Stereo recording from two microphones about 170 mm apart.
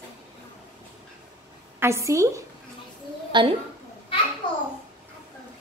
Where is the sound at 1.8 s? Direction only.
15° right (ahead or behind).